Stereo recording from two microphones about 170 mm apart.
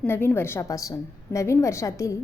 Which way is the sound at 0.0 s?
10° left (ahead or behind).